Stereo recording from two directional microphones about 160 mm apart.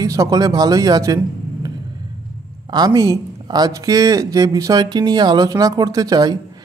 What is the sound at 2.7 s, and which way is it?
Speech, 25° right (ahead or behind).